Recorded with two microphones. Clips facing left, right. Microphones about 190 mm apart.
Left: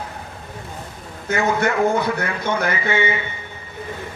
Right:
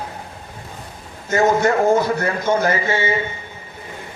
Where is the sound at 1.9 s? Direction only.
60° left (ahead or behind).